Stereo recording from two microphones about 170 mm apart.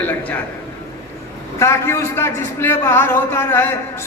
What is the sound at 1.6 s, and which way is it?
A man's voice, 15° left (ahead or behind).